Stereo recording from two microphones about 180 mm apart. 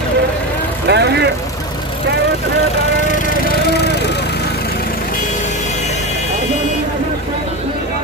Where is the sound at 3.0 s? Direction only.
45° left (ahead or behind).